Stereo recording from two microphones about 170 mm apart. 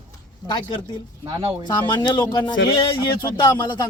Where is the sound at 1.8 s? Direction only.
25° left (ahead or behind).